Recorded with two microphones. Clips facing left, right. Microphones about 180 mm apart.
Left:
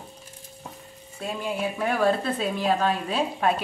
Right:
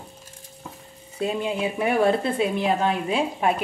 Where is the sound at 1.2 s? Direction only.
20° right (ahead or behind).